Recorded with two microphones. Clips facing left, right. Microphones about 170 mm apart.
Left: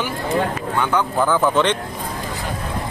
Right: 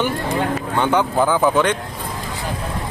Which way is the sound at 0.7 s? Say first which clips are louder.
Right 2 dB; 20° right (ahead or behind).